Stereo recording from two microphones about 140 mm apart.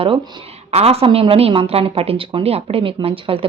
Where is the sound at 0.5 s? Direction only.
45° right (ahead or behind).